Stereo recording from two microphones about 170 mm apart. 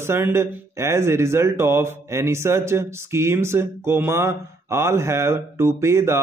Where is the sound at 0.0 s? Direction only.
15° right (ahead or behind).